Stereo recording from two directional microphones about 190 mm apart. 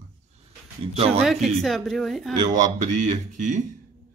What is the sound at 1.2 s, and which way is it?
A woman's voice, centre (ahead or behind).